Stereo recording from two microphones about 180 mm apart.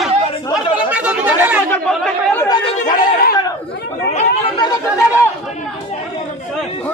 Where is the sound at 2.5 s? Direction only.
30° left (ahead or behind).